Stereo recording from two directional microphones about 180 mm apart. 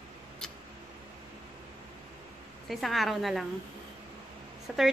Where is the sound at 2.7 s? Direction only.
Centre (ahead or behind).